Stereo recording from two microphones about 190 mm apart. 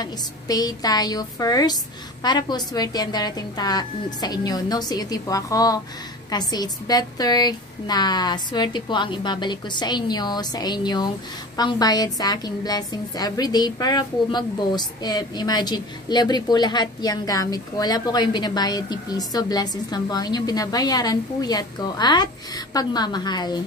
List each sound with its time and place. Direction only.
0.0 s a woman's voice: 20° left (ahead or behind)